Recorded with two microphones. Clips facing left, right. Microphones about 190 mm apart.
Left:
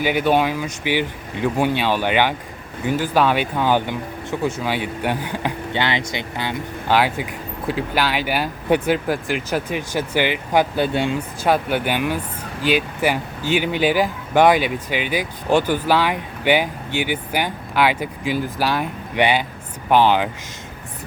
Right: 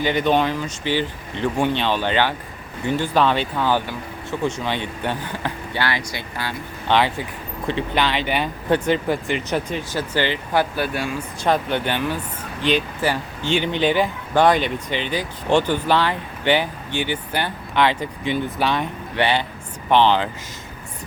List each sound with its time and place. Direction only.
0.0 s speech: 10° left (ahead or behind)
4.4 s speech: 5° left (ahead or behind)
6.8 s speech: 10° left (ahead or behind); by 11.2 s 25° left (ahead or behind)
11.4 s speech: 10° left (ahead or behind)